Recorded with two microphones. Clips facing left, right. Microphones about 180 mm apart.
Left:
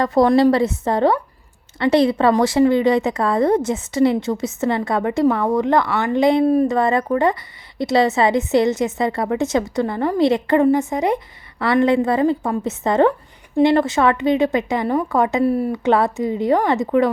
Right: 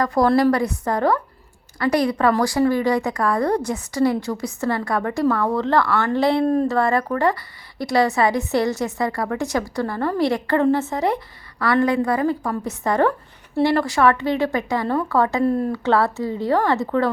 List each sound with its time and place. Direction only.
0.0 s speech: 25° left (ahead or behind)
15.4 s speech: 10° left (ahead or behind)